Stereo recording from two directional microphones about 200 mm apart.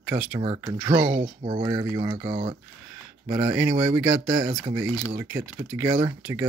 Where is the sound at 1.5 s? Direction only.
20° right (ahead or behind).